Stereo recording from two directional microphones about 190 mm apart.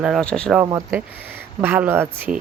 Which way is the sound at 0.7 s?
15° right (ahead or behind).